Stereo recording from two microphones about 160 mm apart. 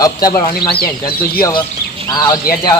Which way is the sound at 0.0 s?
25° left (ahead or behind).